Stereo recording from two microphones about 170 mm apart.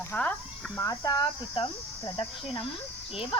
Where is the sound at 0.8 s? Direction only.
20° left (ahead or behind).